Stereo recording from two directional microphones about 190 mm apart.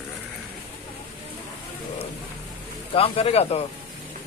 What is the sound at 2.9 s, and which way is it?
Speech, 30° left (ahead or behind).